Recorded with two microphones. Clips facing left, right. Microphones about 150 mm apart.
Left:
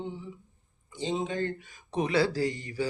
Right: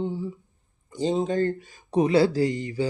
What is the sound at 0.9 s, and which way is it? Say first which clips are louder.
Mantra: right 7 dB; 45° right (ahead or behind).